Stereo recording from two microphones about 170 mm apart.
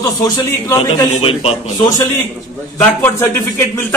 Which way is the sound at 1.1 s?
35° left (ahead or behind).